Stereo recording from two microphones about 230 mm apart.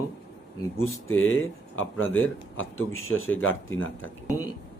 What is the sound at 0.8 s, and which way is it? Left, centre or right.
Speech, left.